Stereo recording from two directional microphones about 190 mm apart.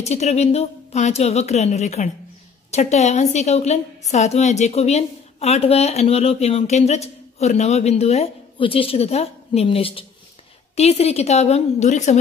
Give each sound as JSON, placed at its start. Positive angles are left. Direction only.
{"t": 0.0, "sound": "a woman's voice", "side_deg": 35}